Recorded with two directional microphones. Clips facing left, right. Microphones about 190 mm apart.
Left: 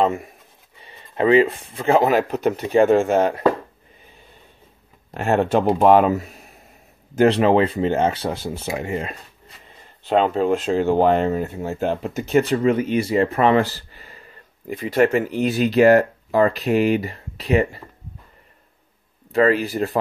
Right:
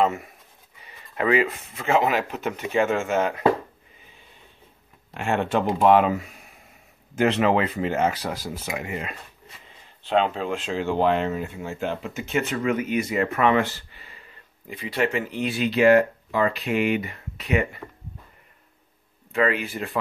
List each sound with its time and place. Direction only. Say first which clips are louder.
0.0 s speech: left 3 dB; 30° left (ahead or behind)
5.1 s speech: left 5 dB; 40° left (ahead or behind)
10.0 s speech: left 5 dB; 45° left (ahead or behind)
19.3 s speech: left 6 dB; 40° left (ahead or behind)